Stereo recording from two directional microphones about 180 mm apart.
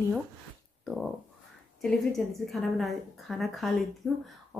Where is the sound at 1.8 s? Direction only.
Centre (ahead or behind).